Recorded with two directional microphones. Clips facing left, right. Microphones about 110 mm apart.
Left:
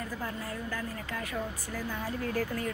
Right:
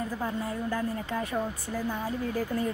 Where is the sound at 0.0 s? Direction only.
25° right (ahead or behind).